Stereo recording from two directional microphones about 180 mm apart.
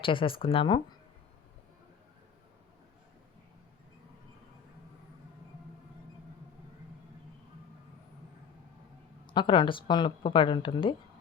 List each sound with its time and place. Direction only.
0.0 s speech: 30° left (ahead or behind)
9.2 s speech: 25° left (ahead or behind)